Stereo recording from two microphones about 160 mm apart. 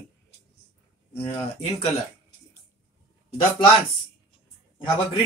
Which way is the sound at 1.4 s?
40° left (ahead or behind).